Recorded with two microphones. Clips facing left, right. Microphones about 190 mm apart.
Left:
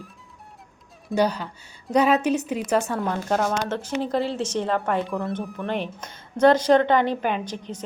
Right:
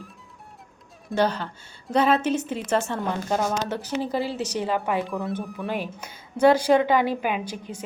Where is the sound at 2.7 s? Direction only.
5° left (ahead or behind).